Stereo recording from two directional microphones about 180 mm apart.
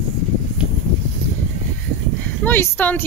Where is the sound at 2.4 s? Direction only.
10° left (ahead or behind).